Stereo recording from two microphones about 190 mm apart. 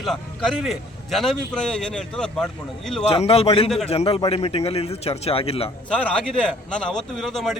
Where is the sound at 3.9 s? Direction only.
30° left (ahead or behind).